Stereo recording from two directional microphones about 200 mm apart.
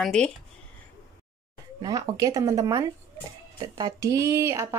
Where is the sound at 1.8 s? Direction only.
20° right (ahead or behind).